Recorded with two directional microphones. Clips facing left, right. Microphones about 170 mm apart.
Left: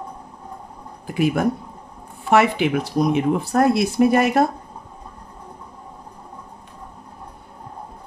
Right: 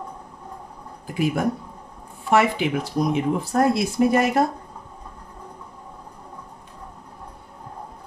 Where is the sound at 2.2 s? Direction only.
70° left (ahead or behind).